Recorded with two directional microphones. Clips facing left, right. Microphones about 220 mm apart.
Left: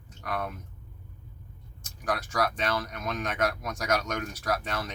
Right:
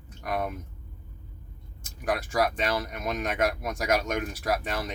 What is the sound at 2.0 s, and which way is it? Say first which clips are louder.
Speech: right 3 dB; 10° right (ahead or behind).